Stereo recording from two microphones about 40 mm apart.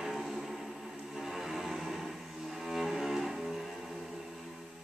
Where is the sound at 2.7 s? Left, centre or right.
Centre.